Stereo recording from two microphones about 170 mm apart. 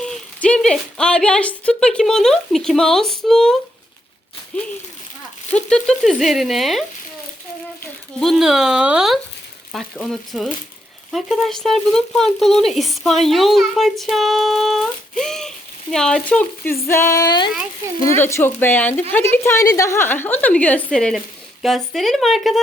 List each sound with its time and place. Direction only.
0.0 s speech: 5° left (ahead or behind)
5.6 s speech: 5° left (ahead or behind)
8.2 s a woman's voice: centre (ahead or behind); by 17.5 s 25° left (ahead or behind)
18.2 s a woman's voice: 15° left (ahead or behind)